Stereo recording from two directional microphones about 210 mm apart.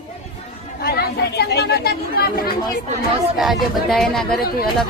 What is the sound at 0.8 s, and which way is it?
Chatter, 50° left (ahead or behind).